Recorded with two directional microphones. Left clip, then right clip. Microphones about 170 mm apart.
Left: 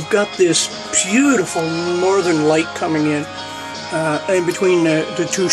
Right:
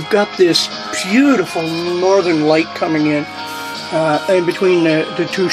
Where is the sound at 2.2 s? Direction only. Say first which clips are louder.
Right 2 dB; 25° right (ahead or behind).